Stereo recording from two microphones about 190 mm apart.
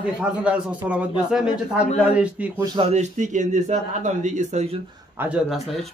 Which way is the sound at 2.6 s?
25° right (ahead or behind).